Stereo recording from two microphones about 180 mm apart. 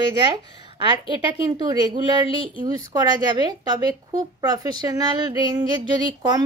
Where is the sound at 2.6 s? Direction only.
25° right (ahead or behind).